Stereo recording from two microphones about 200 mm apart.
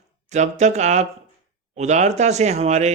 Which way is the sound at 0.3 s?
35° right (ahead or behind).